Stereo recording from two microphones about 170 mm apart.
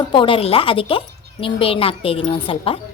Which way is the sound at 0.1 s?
30° left (ahead or behind).